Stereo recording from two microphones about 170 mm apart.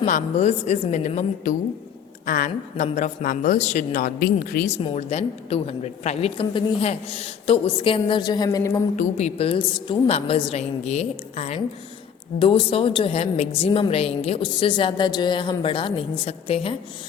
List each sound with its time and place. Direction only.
0.0 s a woman's voice: 40° left (ahead or behind)
4.8 s a woman's voice: 35° left (ahead or behind); by 8.8 s 15° left (ahead or behind)
9.0 s a woman's voice: 40° left (ahead or behind)